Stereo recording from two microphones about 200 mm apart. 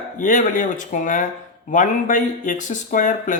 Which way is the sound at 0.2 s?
40° left (ahead or behind).